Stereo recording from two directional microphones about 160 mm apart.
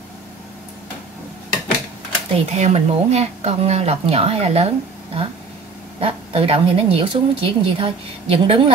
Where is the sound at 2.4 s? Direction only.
45° right (ahead or behind).